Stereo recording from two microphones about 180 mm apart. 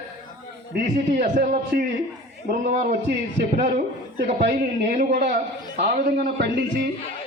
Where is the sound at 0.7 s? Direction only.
65° right (ahead or behind).